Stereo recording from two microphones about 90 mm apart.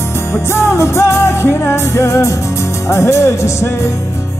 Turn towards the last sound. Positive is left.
turn(degrees=30)  # may be behind; listen again after turning